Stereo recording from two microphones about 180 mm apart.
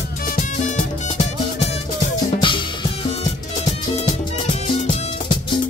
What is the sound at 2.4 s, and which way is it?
Music, 25° left (ahead or behind).